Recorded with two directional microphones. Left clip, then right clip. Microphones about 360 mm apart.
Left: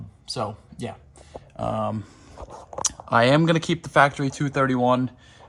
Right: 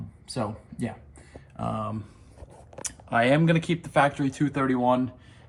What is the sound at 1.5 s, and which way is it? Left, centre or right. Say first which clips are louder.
Speech: left 5 dB; left.